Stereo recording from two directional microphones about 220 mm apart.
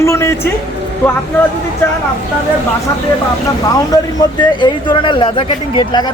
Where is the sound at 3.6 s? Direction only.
15° left (ahead or behind).